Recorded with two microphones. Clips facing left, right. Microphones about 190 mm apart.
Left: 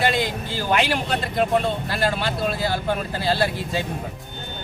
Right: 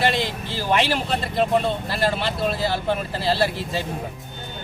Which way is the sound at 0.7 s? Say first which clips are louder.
Right 1 dB; centre (ahead or behind).